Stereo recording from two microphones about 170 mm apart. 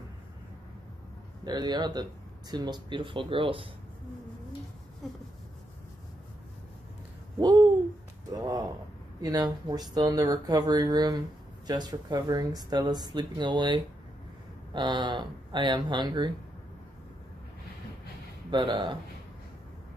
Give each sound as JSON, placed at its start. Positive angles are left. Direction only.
{"t": 1.4, "sound": "speech", "side_deg": -25}
{"t": 7.3, "sound": "speech", "side_deg": -25}
{"t": 8.3, "sound": "a sound", "side_deg": -20}
{"t": 9.2, "sound": "speech", "side_deg": -25}
{"t": 18.5, "sound": "speech", "side_deg": -25}